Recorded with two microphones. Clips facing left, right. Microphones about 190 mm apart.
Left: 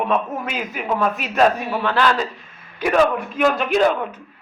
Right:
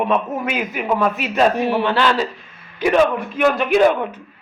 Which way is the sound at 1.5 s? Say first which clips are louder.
Right 6 dB; 80° right.